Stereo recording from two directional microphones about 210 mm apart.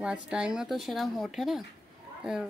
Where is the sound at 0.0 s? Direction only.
5° right (ahead or behind).